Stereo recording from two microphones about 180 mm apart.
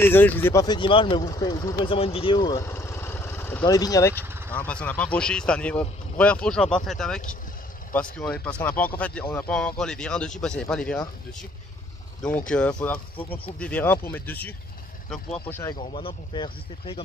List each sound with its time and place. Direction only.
0.0 s speech: 10° left (ahead or behind)
12.2 s speech: 5° left (ahead or behind)
15.5 s speech: 15° left (ahead or behind)
15.9 s speech: 30° left (ahead or behind)